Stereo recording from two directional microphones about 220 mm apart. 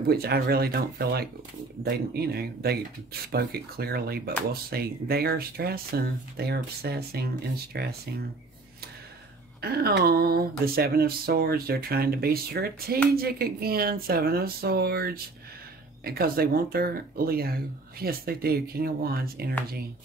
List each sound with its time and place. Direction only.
0.1 s speech: 45° right (ahead or behind)
9.6 s speech: 45° right (ahead or behind)